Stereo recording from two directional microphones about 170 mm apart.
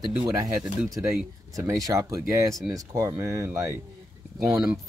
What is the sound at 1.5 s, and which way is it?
Speech, 20° right (ahead or behind).